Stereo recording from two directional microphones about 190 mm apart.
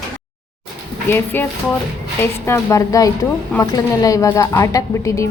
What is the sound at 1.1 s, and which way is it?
A woman's voice, 10° left (ahead or behind).